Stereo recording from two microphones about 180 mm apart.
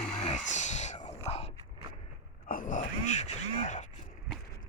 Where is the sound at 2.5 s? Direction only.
50° left (ahead or behind).